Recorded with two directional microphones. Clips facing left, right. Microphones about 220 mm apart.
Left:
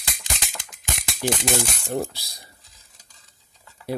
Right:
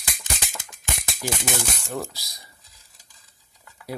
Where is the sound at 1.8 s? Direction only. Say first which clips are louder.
Left 4 dB; 30° left (ahead or behind).